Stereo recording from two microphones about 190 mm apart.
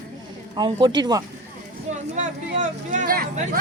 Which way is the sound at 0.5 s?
20° right (ahead or behind).